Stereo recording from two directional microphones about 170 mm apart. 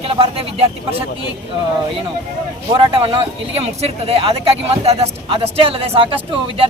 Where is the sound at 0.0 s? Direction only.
35° right (ahead or behind).